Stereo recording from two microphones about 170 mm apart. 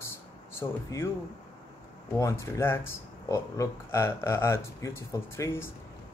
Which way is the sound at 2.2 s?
15° left (ahead or behind).